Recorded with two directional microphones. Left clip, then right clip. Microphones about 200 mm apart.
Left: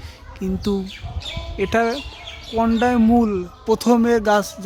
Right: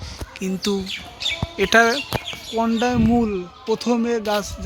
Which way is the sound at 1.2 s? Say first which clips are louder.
Right 8 dB; 40° left (ahead or behind).